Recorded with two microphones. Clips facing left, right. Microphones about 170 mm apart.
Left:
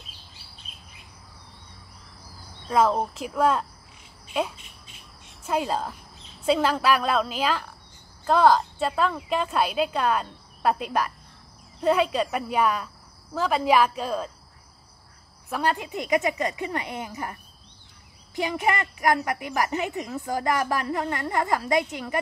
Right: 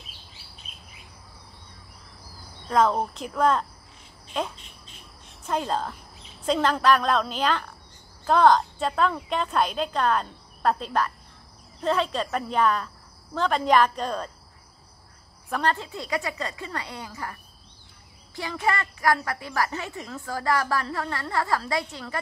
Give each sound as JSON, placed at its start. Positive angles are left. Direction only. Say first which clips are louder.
{"t": 2.7, "sound": "a woman's voice", "louder": "even", "side_deg": 5}
{"t": 15.5, "sound": "a woman's voice", "louder": "even", "side_deg": 10}